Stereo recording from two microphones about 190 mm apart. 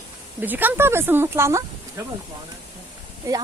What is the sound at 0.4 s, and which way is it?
Speech, 10° right (ahead or behind).